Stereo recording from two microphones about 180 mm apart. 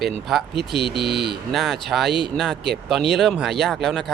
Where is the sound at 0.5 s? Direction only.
70° right (ahead or behind).